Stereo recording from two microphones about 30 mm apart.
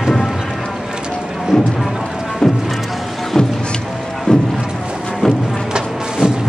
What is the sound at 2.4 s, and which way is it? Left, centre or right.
Music, centre.